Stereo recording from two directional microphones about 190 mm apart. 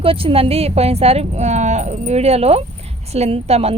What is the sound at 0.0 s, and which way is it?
A woman's voice, 30° right (ahead or behind).